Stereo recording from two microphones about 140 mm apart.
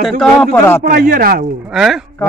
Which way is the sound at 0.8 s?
90° right.